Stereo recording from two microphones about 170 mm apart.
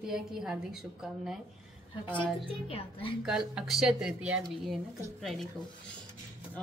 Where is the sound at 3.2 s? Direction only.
Centre (ahead or behind).